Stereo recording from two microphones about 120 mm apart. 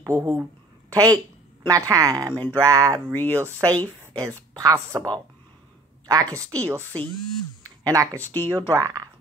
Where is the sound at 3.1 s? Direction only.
15° left (ahead or behind).